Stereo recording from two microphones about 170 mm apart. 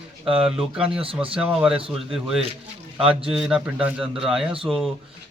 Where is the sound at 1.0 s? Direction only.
30° right (ahead or behind).